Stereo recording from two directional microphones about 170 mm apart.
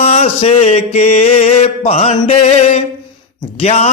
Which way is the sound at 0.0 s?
35° left (ahead or behind).